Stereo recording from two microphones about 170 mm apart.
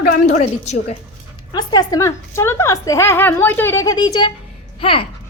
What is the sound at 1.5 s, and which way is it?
A woman's voice, 25° left (ahead or behind).